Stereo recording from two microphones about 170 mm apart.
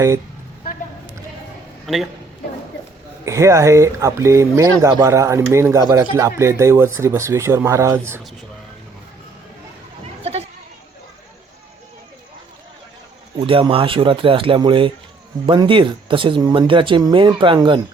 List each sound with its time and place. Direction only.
1.9 s a man's voice: centre (ahead or behind)
3.2 s speech: 15° right (ahead or behind)
13.5 s speech: 30° right (ahead or behind)